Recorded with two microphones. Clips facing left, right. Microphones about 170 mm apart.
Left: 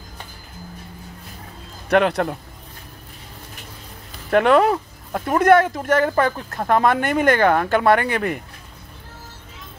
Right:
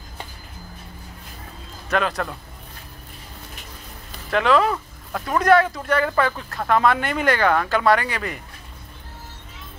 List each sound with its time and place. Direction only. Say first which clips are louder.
1.9 s speech: left 6 dB; 65° left (ahead or behind)
4.3 s speech: left 4 dB; 55° left (ahead or behind)
5.1 s speech: left 3 dB; 25° left (ahead or behind)
5.4 s speech: left 2 dB; 50° left (ahead or behind)